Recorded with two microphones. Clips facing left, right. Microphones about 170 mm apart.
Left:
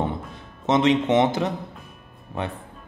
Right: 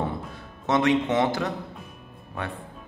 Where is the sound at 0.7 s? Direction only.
20° left (ahead or behind).